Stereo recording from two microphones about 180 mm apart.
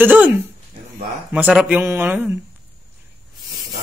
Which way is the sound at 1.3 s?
5° right (ahead or behind).